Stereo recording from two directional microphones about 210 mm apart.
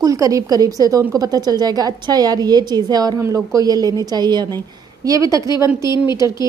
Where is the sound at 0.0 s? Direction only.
15° right (ahead or behind).